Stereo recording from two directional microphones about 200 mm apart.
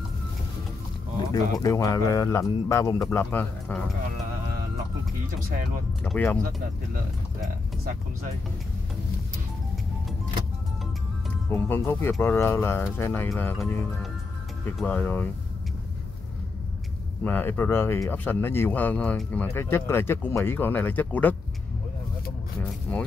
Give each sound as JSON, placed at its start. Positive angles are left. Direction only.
{"t": 1.3, "sound": "speech", "side_deg": 20}
{"t": 6.0, "sound": "speech", "side_deg": 10}
{"t": 11.5, "sound": "speech", "side_deg": 10}
{"t": 14.8, "sound": "speech", "side_deg": 10}
{"t": 17.2, "sound": "speech", "side_deg": 10}
{"t": 22.6, "sound": "a sound", "side_deg": 5}